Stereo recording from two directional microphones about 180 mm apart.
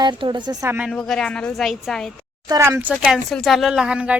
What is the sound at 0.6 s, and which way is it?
Speech, 10° right (ahead or behind).